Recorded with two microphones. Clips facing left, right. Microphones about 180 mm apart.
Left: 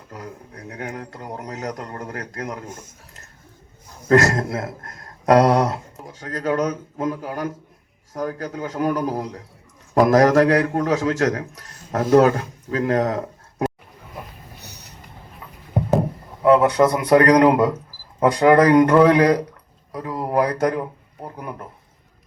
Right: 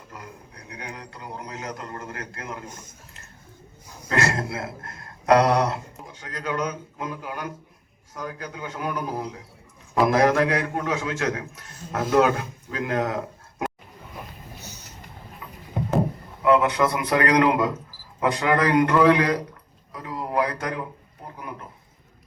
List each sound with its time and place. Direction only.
0.1 s a man's voice: 45° left (ahead or behind)
4.1 s a man's voice: 45° left (ahead or behind)
14.6 s vehicle: 65° left (ahead or behind)
16.4 s a man's voice: 40° left (ahead or behind)